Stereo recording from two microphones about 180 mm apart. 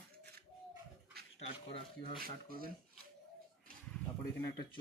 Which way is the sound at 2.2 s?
55° right (ahead or behind).